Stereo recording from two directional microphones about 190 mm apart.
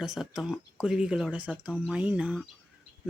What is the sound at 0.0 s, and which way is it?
Speech, centre (ahead or behind).